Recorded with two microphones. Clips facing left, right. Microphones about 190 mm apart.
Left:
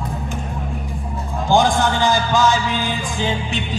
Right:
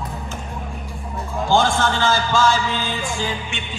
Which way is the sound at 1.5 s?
15° left (ahead or behind).